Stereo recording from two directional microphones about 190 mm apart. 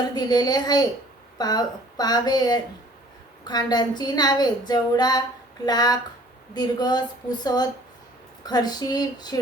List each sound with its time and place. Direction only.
0.1 s a woman's voice: 20° left (ahead or behind)